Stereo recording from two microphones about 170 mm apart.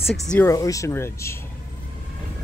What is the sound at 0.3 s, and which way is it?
Speech, 15° left (ahead or behind).